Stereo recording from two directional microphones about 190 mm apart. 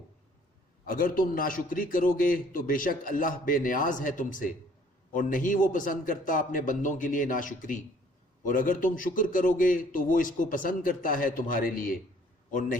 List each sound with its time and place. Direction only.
0.9 s a man's voice: 45° left (ahead or behind)